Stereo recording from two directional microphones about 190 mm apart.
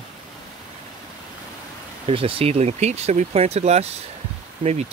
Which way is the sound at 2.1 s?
30° right (ahead or behind).